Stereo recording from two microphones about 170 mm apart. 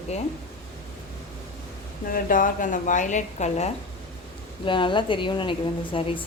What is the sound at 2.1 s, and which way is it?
Speech, 55° left (ahead or behind).